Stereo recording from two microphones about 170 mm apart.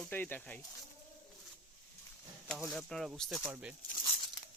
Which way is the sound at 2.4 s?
Centre (ahead or behind).